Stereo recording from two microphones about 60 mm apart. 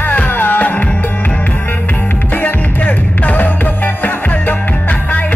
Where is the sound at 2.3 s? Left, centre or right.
Left.